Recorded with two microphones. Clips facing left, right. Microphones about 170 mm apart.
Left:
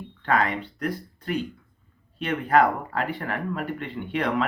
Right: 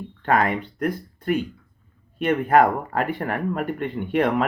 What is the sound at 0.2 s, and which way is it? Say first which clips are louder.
Speech: right 3 dB; 50° right (ahead or behind).